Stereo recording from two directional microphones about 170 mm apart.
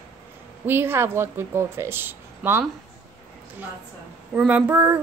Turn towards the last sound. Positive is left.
turn(degrees=-10)  # may be behind; listen again after turning